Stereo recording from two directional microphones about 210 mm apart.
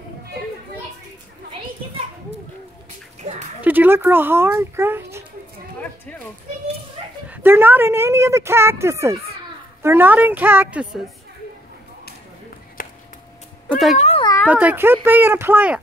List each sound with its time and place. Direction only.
3.2 s a sound: 35° right (ahead or behind)
3.6 s a child's voice: 10° right (ahead or behind)
7.2 s a woman's voice: 10° right (ahead or behind)
12.8 s chop: 40° left (ahead or behind)
13.7 s cat: centre (ahead or behind)
13.9 s cat: 30° left (ahead or behind)
14.5 s a woman's voice: 5° right (ahead or behind)